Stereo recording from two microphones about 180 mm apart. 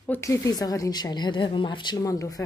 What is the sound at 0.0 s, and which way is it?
A woman's voice, 15° left (ahead or behind).